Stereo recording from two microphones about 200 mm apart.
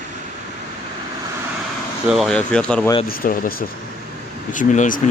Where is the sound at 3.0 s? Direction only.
45° left (ahead or behind).